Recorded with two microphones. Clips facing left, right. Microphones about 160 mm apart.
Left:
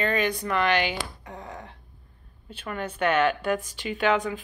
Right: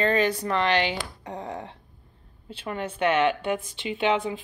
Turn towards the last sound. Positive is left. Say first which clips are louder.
# even
turn(degrees=-25)  # may be behind; listen again after turning